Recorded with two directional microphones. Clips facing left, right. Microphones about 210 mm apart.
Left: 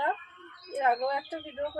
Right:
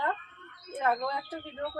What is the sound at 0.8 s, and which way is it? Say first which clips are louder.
Speech: left 2 dB; 15° left (ahead or behind).